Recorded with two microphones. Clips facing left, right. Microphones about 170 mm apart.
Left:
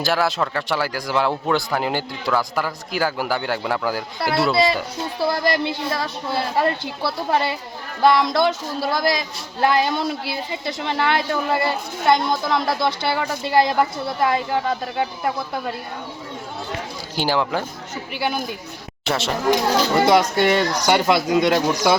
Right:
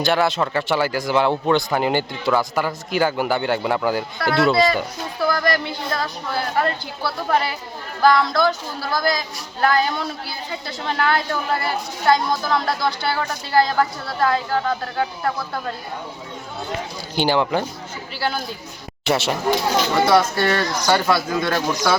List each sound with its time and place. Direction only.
0.0 s speech: centre (ahead or behind)
4.5 s speech: 25° left (ahead or behind)
17.2 s speech: centre (ahead or behind)
18.1 s speech: 15° left (ahead or behind)
19.0 s speech: 5° right (ahead or behind)
20.1 s speech: 15° left (ahead or behind)